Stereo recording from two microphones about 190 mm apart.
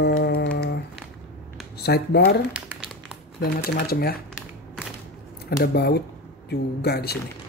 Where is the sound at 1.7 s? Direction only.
60° left (ahead or behind).